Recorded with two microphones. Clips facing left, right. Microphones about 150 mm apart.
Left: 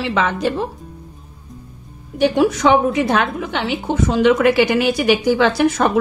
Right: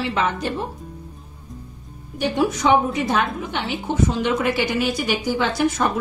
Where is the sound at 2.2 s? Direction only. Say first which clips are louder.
Left 6 dB; 80° left.